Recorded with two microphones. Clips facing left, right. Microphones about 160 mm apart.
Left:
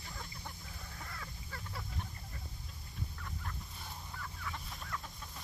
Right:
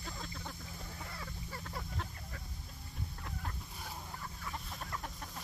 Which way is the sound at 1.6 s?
65° right (ahead or behind).